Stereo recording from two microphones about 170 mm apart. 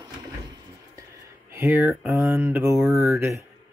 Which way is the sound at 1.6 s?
15° right (ahead or behind).